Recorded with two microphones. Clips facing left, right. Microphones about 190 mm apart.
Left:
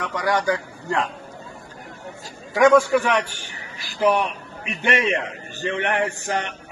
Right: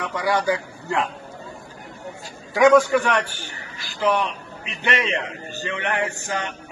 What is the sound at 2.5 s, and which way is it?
Speech, centre (ahead or behind).